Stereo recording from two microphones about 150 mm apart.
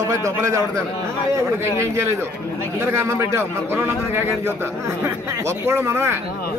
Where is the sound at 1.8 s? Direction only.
20° right (ahead or behind).